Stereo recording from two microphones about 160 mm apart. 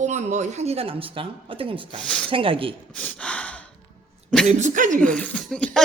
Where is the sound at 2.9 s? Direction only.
10° left (ahead or behind).